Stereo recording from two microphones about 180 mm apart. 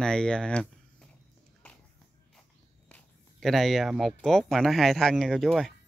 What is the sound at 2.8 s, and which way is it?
Speech, 5° left (ahead or behind).